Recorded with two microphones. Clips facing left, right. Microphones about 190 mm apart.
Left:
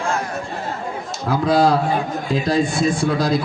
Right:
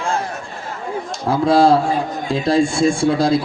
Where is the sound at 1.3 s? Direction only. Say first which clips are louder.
Right 3 dB; 30° right (ahead or behind).